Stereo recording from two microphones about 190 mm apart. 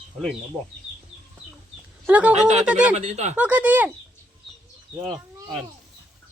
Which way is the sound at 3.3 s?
5° right (ahead or behind).